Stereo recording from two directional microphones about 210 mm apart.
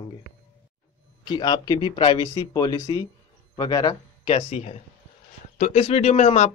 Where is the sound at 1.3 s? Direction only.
20° left (ahead or behind).